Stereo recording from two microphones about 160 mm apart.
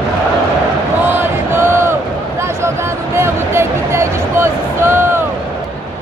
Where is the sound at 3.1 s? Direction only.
15° right (ahead or behind).